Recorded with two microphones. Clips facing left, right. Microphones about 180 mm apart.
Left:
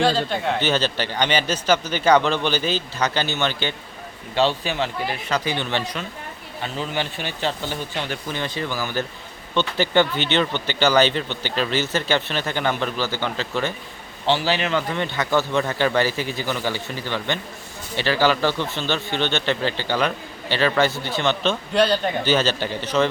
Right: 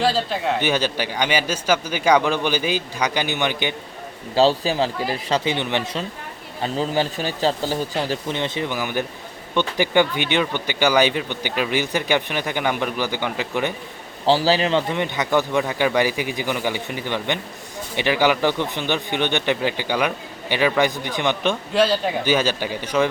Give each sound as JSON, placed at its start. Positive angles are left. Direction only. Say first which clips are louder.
{"t": 0.0, "sound": "speech", "louder": "even", "side_deg": 0}
{"t": 4.4, "sound": "speech", "louder": "right 4 dB", "side_deg": -35}
{"t": 5.5, "sound": "speech", "louder": "right 2 dB", "side_deg": -15}
{"t": 6.6, "sound": "speech", "louder": "right 5 dB", "side_deg": -35}
{"t": 14.3, "sound": "speech", "louder": "right 4 dB", "side_deg": -35}
{"t": 14.9, "sound": "speech", "louder": "right 1 dB", "side_deg": -15}
{"t": 21.5, "sound": "speech", "louder": "even", "side_deg": -5}